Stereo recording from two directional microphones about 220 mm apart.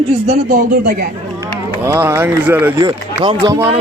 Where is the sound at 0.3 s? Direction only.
40° right (ahead or behind).